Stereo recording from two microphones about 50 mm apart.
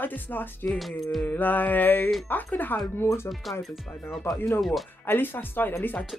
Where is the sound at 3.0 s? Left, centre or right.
Left.